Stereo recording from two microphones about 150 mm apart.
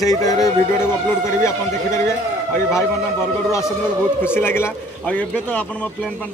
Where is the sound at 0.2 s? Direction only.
25° left (ahead or behind).